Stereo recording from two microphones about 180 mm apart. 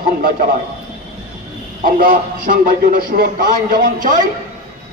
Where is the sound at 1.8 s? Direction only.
50° right (ahead or behind).